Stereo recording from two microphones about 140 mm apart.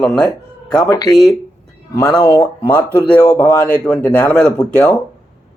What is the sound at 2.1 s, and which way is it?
Speech, 30° left (ahead or behind).